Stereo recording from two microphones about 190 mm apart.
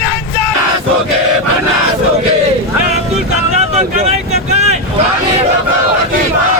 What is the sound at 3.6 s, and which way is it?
Vehicle, 35° right (ahead or behind).